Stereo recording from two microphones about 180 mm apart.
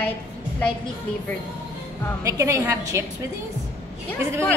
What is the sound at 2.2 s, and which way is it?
Speech, 15° right (ahead or behind).